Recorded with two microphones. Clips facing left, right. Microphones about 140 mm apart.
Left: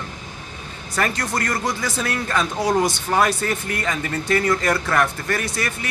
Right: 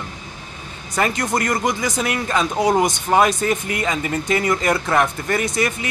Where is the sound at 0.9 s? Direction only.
20° right (ahead or behind).